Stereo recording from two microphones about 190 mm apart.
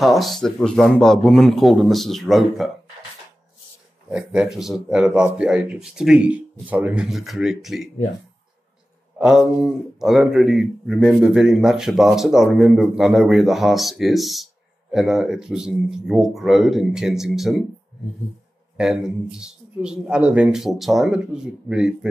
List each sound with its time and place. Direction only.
0.0 s speech: centre (ahead or behind)
4.1 s speech: 5° right (ahead or behind)
9.2 s speech: 5° right (ahead or behind)
18.8 s speech: centre (ahead or behind)